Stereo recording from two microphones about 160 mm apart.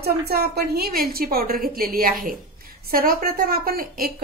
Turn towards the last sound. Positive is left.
turn(degrees=-65)  # may be behind; listen again after turning